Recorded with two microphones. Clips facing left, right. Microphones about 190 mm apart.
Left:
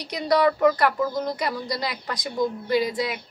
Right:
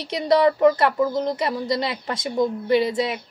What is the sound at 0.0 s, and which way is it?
Speech, 25° right (ahead or behind).